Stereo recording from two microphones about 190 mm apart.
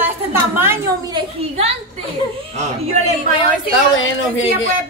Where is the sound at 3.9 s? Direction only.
85° left.